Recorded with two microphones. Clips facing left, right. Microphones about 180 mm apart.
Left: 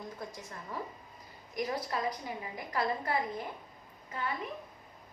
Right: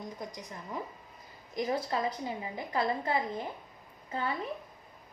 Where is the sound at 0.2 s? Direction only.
15° right (ahead or behind).